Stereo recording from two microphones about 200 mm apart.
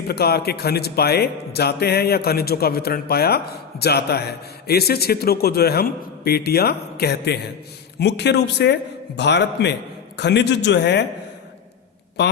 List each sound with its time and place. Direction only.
0.1 s a man's voice: 50° left (ahead or behind)